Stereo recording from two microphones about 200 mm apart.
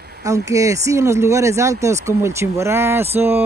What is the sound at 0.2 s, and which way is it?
Speech, 15° right (ahead or behind).